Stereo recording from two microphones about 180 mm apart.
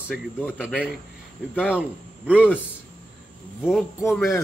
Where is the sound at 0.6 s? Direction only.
5° right (ahead or behind).